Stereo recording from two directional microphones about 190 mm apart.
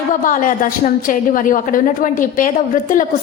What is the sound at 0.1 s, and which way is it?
A woman's voice, 45° left (ahead or behind).